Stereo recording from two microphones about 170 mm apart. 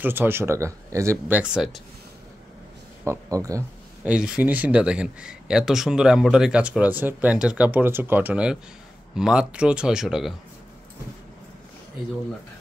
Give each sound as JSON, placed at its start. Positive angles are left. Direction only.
{"t": 0.0, "sound": "speech", "side_deg": -10}
{"t": 1.3, "sound": "speech", "side_deg": -5}
{"t": 3.1, "sound": "speech", "side_deg": -20}
{"t": 4.0, "sound": "speech", "side_deg": -5}